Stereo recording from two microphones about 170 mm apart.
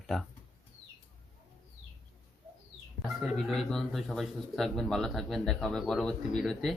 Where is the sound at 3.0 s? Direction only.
Centre (ahead or behind).